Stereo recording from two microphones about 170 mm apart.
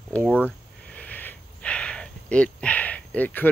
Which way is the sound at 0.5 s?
10° left (ahead or behind).